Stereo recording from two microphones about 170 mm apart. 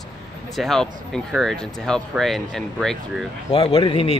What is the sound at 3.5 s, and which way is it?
Speech, 35° left (ahead or behind).